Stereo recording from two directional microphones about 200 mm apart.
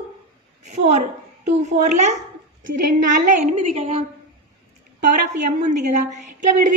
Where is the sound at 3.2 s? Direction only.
35° right (ahead or behind).